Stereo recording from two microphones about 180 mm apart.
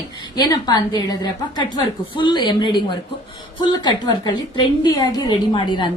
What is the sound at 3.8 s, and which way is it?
A woman's voice, 25° left (ahead or behind).